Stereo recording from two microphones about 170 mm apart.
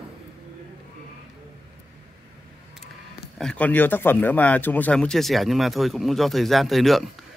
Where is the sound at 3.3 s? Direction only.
5° left (ahead or behind).